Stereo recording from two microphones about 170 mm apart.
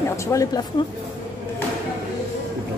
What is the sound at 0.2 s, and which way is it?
Speech, 20° left (ahead or behind).